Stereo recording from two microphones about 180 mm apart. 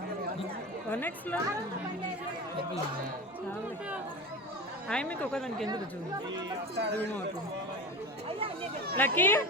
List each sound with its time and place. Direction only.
0.9 s speech: 10° left (ahead or behind)
4.9 s speech: 5° left (ahead or behind)
6.3 s speech: 70° right (ahead or behind)
9.0 s speech: 10° left (ahead or behind)